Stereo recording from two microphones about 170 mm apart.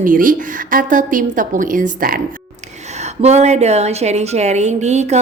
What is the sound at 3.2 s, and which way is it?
A woman's voice, 40° right (ahead or behind).